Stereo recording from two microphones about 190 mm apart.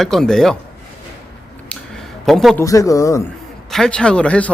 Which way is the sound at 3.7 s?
5° left (ahead or behind).